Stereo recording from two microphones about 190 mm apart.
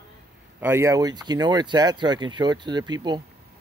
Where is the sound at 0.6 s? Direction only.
10° right (ahead or behind).